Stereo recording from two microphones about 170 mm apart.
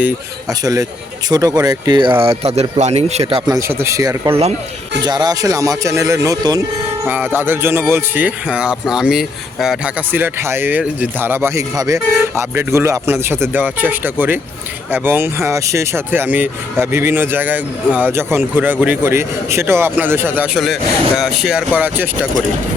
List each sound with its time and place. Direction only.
0.6 s speech: 20° right (ahead or behind)
2.2 s speech: 35° right (ahead or behind)
3.7 s speech: 15° right (ahead or behind)